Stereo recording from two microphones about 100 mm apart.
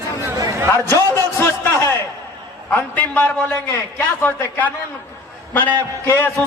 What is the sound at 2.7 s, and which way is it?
A man's voice, 15° left (ahead or behind).